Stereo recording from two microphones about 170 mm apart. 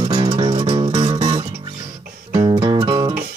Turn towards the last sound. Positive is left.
turn(degrees=-25)  # may be behind; listen again after turning